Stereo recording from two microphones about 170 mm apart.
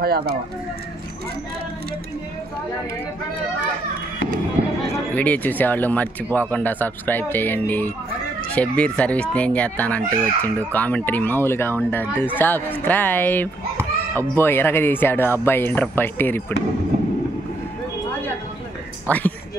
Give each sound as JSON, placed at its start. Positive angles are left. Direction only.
{"t": 0.0, "sound": "speech", "side_deg": -65}
{"t": 4.9, "sound": "speech", "side_deg": 10}
{"t": 19.0, "sound": "speech", "side_deg": 10}